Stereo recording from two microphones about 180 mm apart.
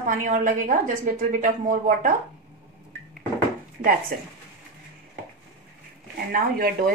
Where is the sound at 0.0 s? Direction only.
45° right (ahead or behind).